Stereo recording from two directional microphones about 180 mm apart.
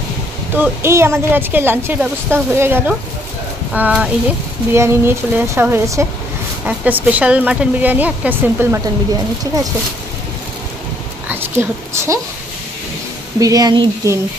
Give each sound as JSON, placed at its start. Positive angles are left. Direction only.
{"t": 0.6, "sound": "a woman's voice", "side_deg": -15}
{"t": 11.2, "sound": "a sound", "side_deg": -10}
{"t": 13.4, "sound": "speech", "side_deg": -20}